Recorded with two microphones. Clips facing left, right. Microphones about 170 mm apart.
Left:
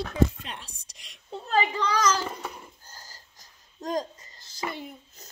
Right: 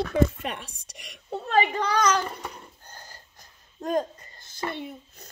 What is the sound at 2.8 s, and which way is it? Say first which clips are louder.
Wheeze: right 3 dB; 55° right (ahead or behind).